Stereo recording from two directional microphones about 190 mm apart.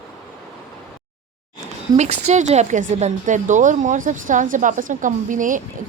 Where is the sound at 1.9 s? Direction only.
35° right (ahead or behind).